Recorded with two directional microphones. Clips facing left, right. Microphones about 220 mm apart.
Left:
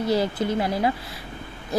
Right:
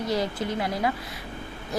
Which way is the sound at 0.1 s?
30° left (ahead or behind).